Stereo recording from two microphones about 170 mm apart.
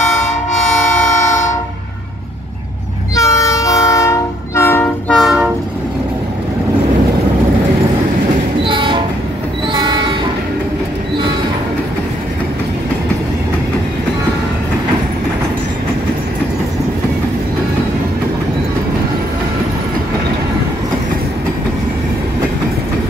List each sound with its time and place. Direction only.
3.2 s train: 20° left (ahead or behind); by 5.5 s centre (ahead or behind)
8.6 s train: 30° right (ahead or behind)